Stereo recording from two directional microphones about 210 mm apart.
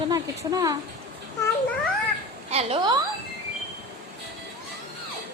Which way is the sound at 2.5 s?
30° right (ahead or behind).